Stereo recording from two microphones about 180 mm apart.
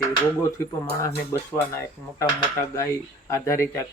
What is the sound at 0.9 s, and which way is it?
Speech, 15° left (ahead or behind).